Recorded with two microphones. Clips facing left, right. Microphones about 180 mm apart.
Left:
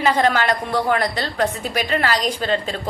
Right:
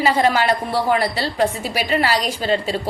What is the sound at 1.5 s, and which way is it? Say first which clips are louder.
A woman's voice: right 1 dB; 10° right (ahead or behind).